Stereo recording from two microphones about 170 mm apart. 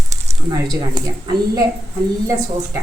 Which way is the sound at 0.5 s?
25° right (ahead or behind).